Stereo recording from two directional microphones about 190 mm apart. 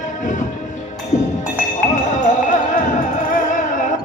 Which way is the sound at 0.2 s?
40° left (ahead or behind).